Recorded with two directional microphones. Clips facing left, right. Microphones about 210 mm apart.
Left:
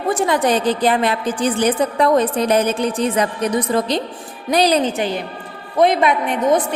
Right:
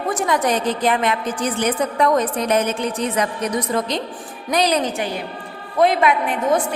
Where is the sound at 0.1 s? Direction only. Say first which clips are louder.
Left 3 dB; 30° left (ahead or behind).